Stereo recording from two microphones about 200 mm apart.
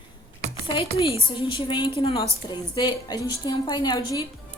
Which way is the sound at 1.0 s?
25° left (ahead or behind).